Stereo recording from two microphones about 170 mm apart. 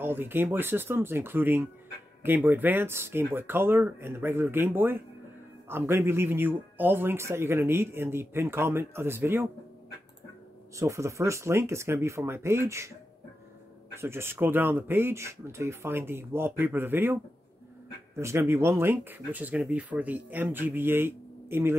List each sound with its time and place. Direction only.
0.0 s speech: 10° right (ahead or behind)
10.8 s speech: 15° right (ahead or behind)
13.9 s speech: 15° right (ahead or behind)